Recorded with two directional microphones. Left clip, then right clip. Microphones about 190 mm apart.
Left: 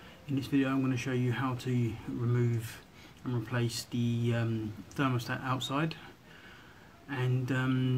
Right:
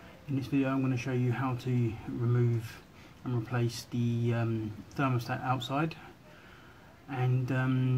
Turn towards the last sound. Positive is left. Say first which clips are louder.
# even
turn(degrees=0)  # may be behind; listen again after turning